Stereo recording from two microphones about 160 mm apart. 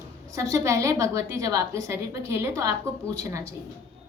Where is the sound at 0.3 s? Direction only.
20° right (ahead or behind).